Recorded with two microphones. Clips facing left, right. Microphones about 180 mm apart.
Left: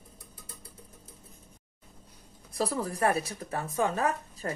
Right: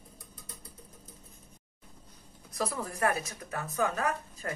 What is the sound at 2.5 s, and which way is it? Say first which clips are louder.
Speech: left 4 dB; 35° left (ahead or behind).